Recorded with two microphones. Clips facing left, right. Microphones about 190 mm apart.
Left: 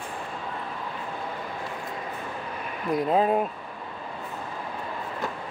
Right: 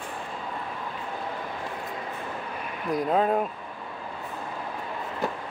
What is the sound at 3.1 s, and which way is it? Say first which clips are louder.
Speech: left 1 dB; 5° left (ahead or behind).